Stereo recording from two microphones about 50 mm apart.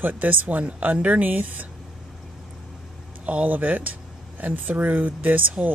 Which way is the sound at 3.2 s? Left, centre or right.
Right.